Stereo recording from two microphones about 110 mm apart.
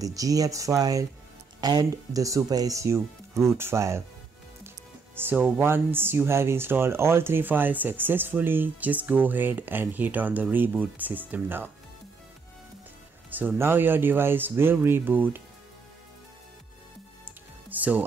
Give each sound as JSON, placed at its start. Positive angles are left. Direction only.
{"t": 0.0, "sound": "speech", "side_deg": -30}
{"t": 5.1, "sound": "speech", "side_deg": -15}
{"t": 13.3, "sound": "speech", "side_deg": -15}
{"t": 17.2, "sound": "music", "side_deg": -15}